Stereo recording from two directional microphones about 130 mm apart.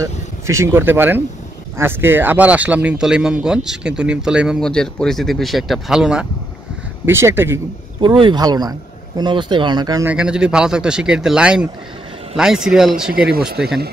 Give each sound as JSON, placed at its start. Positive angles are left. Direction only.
{"t": 0.0, "sound": "speech", "side_deg": -20}
{"t": 7.1, "sound": "speech", "side_deg": -20}
{"t": 8.0, "sound": "speech", "side_deg": -40}
{"t": 10.0, "sound": "speech", "side_deg": -5}